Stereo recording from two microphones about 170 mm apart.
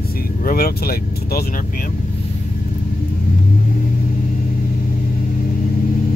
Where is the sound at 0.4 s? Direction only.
60° left (ahead or behind).